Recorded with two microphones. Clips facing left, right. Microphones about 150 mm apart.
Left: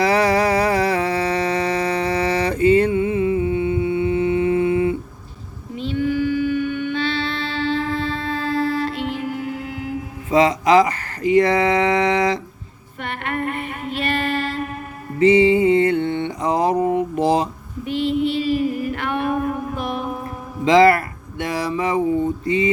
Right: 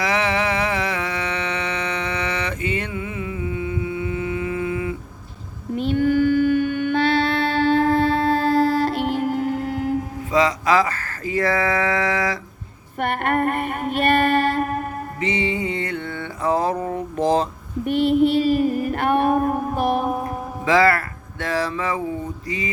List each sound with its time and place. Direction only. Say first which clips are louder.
0.0 s music: left 5 dB; 35° left (ahead or behind)
5.7 s mantra: right 3 dB; 55° right (ahead or behind)
10.3 s a sound: left 4 dB; 25° left (ahead or behind)
13.0 s child singing: right 5 dB; 50° right (ahead or behind)
15.2 s mantra: left 11 dB; 30° left (ahead or behind); by 17.4 s 10° left (ahead or behind)
17.8 s female singing: right 3 dB; 55° right (ahead or behind)
20.7 s music: left 4 dB; 20° left (ahead or behind)
21.4 s mantra: left 1 dB; 15° left (ahead or behind)